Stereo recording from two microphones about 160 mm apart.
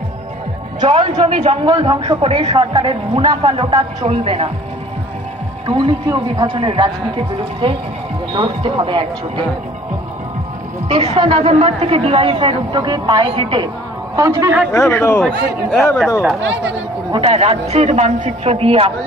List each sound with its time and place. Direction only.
0.7 s speech: 30° right (ahead or behind)
1.7 s speech: 30° right (ahead or behind)
5.7 s speech: 30° right (ahead or behind)
8.3 s speech: 30° right (ahead or behind)
10.9 s speech: 35° right (ahead or behind)
14.1 s a man's voice: 20° right (ahead or behind)
14.7 s speech: 15° left (ahead or behind)
17.1 s speech: 40° right (ahead or behind)